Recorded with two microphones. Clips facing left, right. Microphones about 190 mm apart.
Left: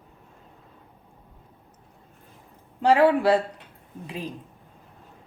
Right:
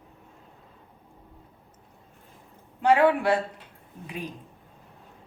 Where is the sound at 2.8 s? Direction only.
35° left (ahead or behind).